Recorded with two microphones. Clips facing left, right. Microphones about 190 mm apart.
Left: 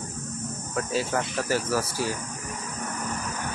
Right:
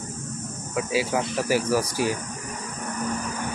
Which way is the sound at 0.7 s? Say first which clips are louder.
Right 3 dB; 10° right (ahead or behind).